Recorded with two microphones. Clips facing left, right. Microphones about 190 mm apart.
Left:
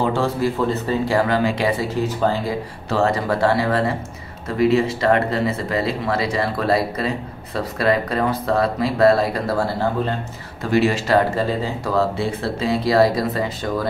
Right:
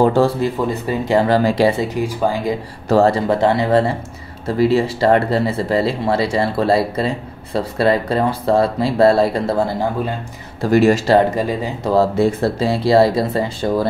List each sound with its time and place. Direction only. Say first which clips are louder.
0.0 s a sound: right 7 dB; 40° right (ahead or behind)
0.4 s speech: right 1 dB; 20° right (ahead or behind)
1.3 s speech: right 5 dB; 35° right (ahead or behind)
1.8 s speech: right 2 dB; 15° right (ahead or behind)
2.9 s speech: right 6 dB; 35° right (ahead or behind)
4.6 s speech: right 2 dB; 30° right (ahead or behind); by 10.1 s 15° right (ahead or behind)
10.6 s speech: right 5 dB; 45° right (ahead or behind)
11.2 s speech: right 2 dB; 15° right (ahead or behind)
11.9 s speech: right 7 dB; 40° right (ahead or behind)